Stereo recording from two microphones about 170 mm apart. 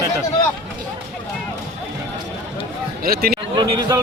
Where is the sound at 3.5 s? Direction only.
25° right (ahead or behind).